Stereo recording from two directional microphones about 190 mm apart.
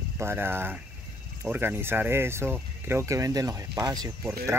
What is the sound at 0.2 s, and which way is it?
Speech, 10° right (ahead or behind).